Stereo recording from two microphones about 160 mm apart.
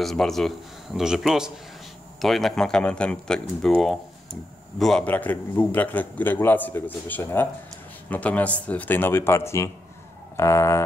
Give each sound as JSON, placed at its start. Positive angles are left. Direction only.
{"t": 0.0, "sound": "a man's voice", "side_deg": 0}